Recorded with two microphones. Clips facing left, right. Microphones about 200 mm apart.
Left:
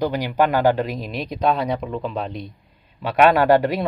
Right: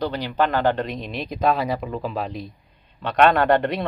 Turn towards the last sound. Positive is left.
turn(degrees=0)  # may be behind; listen again after turning